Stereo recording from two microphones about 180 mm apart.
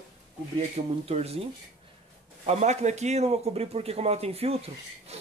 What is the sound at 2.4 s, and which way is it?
Speech, 40° right (ahead or behind).